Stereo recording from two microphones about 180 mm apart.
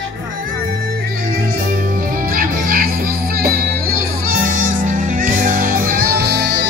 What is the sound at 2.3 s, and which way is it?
Music, 55° right (ahead or behind).